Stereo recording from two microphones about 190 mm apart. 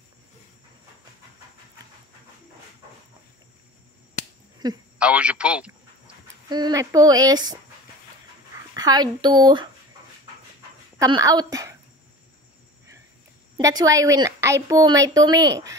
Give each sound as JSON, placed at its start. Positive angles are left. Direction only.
{"t": 4.9, "sound": "speech", "side_deg": -5}
{"t": 6.2, "sound": "speech", "side_deg": -20}
{"t": 8.7, "sound": "a woman's voice", "side_deg": -20}
{"t": 11.0, "sound": "a woman's voice", "side_deg": -20}
{"t": 13.6, "sound": "a woman's voice", "side_deg": -15}